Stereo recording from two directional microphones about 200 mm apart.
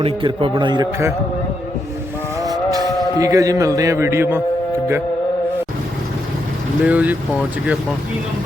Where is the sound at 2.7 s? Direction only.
20° right (ahead or behind).